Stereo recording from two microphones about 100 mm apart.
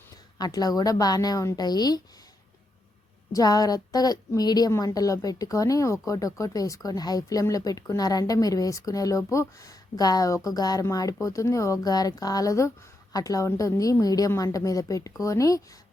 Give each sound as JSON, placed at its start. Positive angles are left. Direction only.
{"t": 0.3, "sound": "speech", "side_deg": 40}
{"t": 3.3, "sound": "speech", "side_deg": 40}